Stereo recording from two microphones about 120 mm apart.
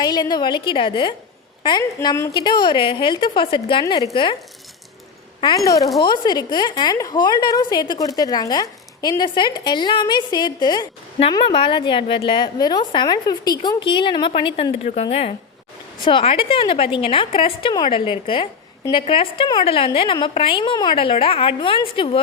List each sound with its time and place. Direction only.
0.0 s a woman's voice: 35° left (ahead or behind)
1.8 s a woman's voice: 25° left (ahead or behind)
2.3 s a woman's voice: 40° left (ahead or behind)
5.4 s a woman's voice: 30° left (ahead or behind); by 15.4 s 55° left (ahead or behind)
16.0 s a woman's voice: 45° left (ahead or behind)